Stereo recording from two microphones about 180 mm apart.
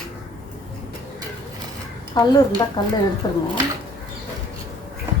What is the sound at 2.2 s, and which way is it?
A woman's voice, 25° left (ahead or behind).